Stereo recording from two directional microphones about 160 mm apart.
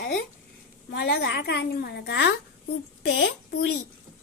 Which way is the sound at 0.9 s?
90° left.